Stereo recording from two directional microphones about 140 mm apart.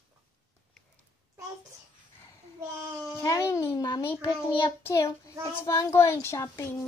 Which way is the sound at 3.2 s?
20° left (ahead or behind).